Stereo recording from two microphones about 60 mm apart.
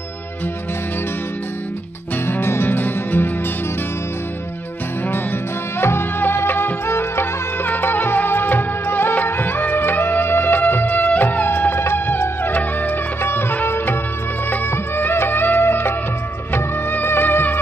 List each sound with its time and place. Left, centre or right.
2.2 s music: left
5.8 s music: left